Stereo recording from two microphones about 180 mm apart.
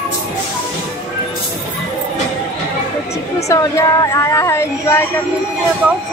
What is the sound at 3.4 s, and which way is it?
A woman's voice, 20° left (ahead or behind).